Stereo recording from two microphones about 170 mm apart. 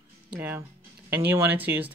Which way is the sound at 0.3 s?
10° right (ahead or behind).